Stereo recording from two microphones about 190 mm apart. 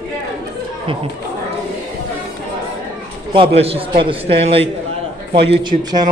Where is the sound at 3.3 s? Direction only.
30° right (ahead or behind).